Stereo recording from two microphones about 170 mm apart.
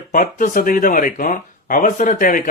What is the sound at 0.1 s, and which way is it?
Speech, 50° left (ahead or behind).